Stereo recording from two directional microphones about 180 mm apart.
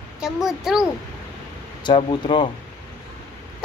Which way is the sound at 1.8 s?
25° left (ahead or behind).